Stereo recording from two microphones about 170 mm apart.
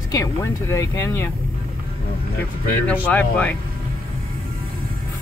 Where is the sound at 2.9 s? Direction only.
10° left (ahead or behind).